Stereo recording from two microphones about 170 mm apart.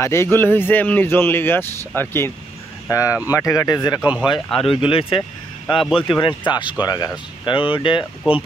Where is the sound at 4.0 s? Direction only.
5° right (ahead or behind).